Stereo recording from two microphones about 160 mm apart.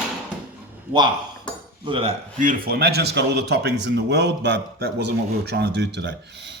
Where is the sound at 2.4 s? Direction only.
65° right (ahead or behind).